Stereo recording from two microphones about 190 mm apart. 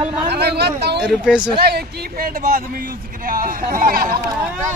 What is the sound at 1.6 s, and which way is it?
Speech, 55° right (ahead or behind).